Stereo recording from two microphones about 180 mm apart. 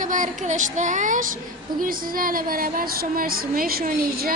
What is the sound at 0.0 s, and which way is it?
Speech, 45° right (ahead or behind).